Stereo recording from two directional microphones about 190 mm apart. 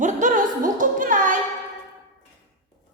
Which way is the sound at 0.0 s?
40° right (ahead or behind).